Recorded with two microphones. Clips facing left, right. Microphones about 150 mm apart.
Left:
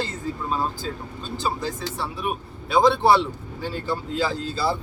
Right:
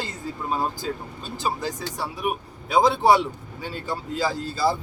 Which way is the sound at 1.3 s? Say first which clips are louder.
Even; 10° right (ahead or behind).